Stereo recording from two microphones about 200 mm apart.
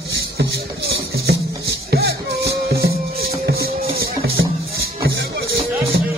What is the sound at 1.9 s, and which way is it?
Music, 50° right (ahead or behind).